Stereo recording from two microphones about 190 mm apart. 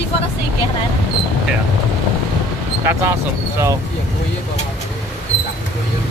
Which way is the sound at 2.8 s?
15° right (ahead or behind).